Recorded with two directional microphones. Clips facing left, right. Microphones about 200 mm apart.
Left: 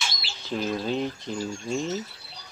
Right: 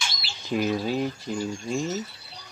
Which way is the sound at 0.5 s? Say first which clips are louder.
Right 2 dB; 10° right (ahead or behind).